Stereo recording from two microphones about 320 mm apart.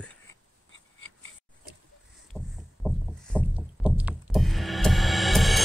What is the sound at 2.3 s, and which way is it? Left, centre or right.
Rowboat, centre.